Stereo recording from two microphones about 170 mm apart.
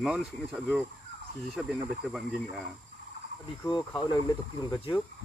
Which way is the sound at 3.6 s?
25° left (ahead or behind).